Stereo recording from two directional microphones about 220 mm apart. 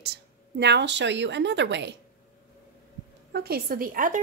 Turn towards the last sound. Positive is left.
turn(degrees=-40)  # may be behind; listen again after turning